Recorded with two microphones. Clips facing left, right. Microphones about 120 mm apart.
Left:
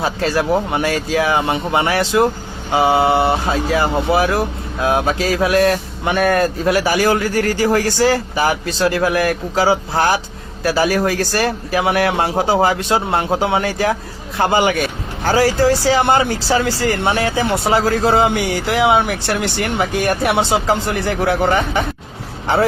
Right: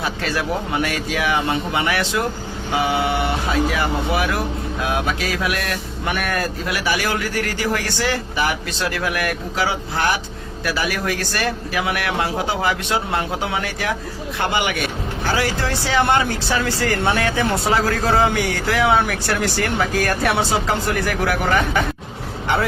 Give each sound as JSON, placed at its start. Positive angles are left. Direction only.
{"t": 0.0, "sound": "speech", "side_deg": 35}
{"t": 18.9, "sound": "speech", "side_deg": 20}